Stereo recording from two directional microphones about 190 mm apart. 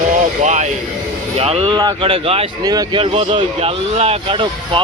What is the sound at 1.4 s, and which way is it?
Speech, 30° right (ahead or behind).